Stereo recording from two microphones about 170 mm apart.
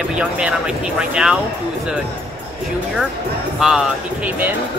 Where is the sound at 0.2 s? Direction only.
5° right (ahead or behind).